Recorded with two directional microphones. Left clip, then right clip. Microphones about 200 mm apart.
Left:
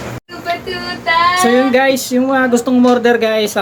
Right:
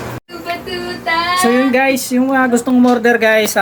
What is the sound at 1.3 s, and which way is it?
Speech, 5° left (ahead or behind).